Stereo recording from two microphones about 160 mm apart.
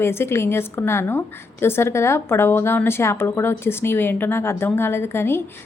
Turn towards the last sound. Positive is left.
turn(degrees=15)  # may be behind; listen again after turning